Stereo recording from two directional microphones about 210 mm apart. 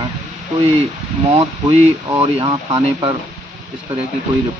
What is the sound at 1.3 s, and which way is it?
Speech, 30° right (ahead or behind).